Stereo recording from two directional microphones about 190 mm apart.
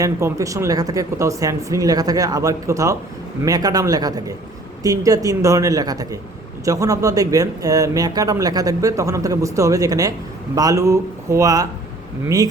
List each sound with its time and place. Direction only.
0.0 s speech: 15° right (ahead or behind)